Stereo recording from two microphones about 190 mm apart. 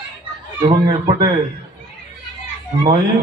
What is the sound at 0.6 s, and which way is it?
Speech, 25° right (ahead or behind).